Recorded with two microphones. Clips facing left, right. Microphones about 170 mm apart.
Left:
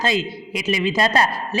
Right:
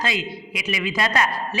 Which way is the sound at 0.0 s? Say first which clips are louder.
Left 5 dB; 30° left (ahead or behind).